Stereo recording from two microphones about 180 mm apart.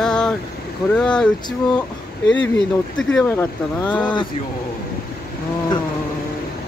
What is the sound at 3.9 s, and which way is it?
Speech, 25° left (ahead or behind).